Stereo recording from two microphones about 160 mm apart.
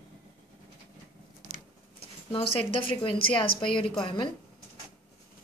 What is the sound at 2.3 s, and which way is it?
A woman's voice, 35° left (ahead or behind).